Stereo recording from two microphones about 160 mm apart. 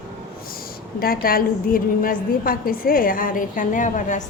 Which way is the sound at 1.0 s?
65° left (ahead or behind).